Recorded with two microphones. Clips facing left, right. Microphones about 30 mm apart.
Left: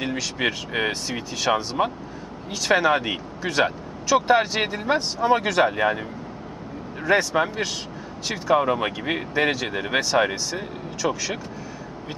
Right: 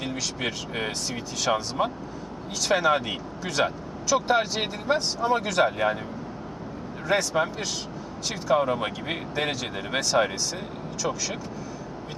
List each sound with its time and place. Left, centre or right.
0.0 s speech: centre
7.1 s speech: centre